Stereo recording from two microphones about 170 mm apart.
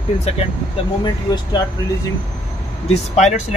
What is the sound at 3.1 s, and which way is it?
Speech, 40° left (ahead or behind).